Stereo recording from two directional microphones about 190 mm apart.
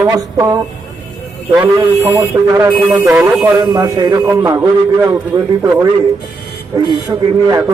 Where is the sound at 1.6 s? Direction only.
15° right (ahead or behind).